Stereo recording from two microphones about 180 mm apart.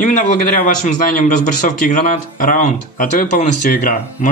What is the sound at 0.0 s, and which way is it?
A man's voice, 45° left (ahead or behind).